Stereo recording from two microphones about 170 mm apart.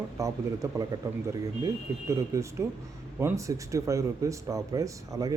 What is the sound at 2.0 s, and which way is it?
A man's voice, 15° right (ahead or behind).